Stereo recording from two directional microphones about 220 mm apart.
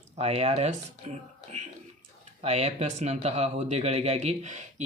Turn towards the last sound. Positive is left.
turn(degrees=-35)  # may be behind; listen again after turning